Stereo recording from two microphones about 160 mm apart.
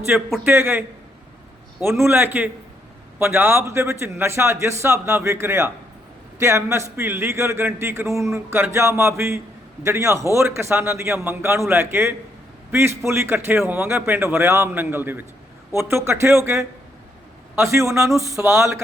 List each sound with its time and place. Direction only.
0.1 s a man's voice: 10° right (ahead or behind)